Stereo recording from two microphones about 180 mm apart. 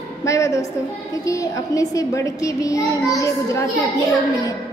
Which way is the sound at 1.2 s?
20° left (ahead or behind).